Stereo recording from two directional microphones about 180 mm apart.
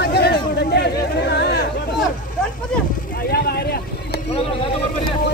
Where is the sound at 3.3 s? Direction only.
60° left (ahead or behind).